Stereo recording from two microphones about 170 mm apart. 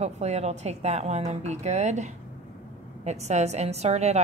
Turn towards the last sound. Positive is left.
turn(degrees=-40)  # may be behind; listen again after turning